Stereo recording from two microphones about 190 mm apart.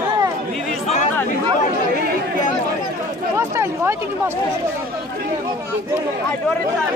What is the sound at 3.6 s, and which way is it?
Speech, 15° right (ahead or behind).